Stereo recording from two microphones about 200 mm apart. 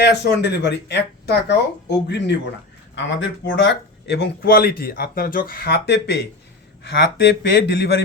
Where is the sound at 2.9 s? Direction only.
65° left (ahead or behind).